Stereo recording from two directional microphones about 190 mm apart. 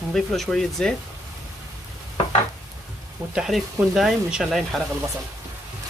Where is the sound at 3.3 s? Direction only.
Centre (ahead or behind).